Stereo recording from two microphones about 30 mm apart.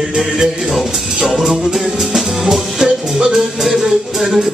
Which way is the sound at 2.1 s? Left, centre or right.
Centre.